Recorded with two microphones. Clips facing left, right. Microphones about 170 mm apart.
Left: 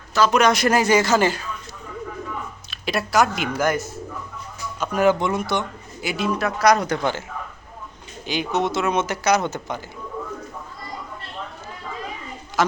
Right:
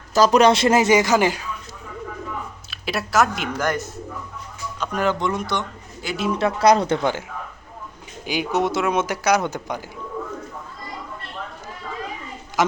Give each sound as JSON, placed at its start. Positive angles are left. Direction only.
{"t": 0.1, "sound": "speech", "side_deg": -35}
{"t": 2.6, "sound": "speech", "side_deg": -5}
{"t": 6.4, "sound": "speech", "side_deg": -25}
{"t": 8.3, "sound": "speech", "side_deg": -10}
{"t": 12.6, "sound": "speech", "side_deg": -15}